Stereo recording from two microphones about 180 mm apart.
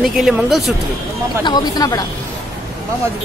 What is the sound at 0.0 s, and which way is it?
Speech, 5° right (ahead or behind).